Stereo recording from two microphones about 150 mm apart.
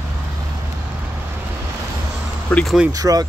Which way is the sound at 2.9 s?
25° right (ahead or behind).